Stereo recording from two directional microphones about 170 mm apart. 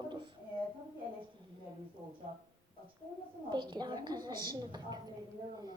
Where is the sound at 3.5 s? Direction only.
25° right (ahead or behind).